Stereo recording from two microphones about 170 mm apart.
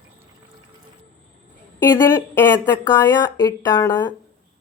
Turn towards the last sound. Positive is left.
turn(degrees=25)  # may be behind; listen again after turning